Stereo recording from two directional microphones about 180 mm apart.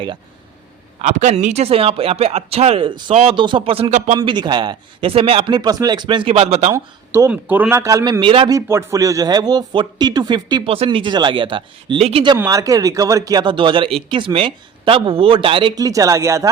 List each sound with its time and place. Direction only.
0.9 s speech: 40° right (ahead or behind)
4.2 s speech: 25° right (ahead or behind)
6.7 s a man's voice: 15° right (ahead or behind)
8.5 s speech: 15° right (ahead or behind)
12.4 s speech: 20° right (ahead or behind)